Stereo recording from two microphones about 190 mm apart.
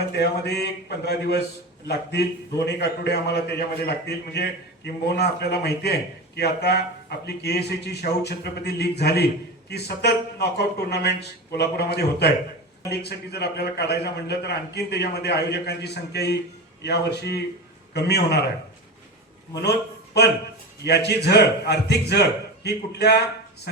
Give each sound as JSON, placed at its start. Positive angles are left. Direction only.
{"t": 0.1, "sound": "a man's voice", "side_deg": 60}
{"t": 20.8, "sound": "a man's voice", "side_deg": 60}